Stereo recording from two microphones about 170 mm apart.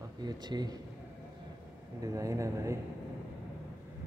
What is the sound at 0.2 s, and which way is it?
Speech, 25° right (ahead or behind).